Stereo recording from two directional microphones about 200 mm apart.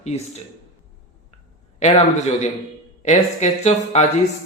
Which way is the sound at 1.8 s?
35° left (ahead or behind).